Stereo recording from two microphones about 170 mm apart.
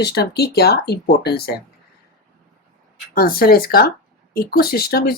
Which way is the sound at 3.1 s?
60° left (ahead or behind).